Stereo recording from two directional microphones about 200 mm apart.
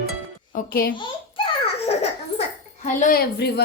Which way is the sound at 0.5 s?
45° left (ahead or behind).